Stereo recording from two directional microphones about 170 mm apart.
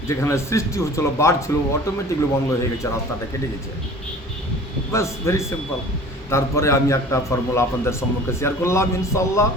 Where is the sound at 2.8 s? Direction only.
15° left (ahead or behind).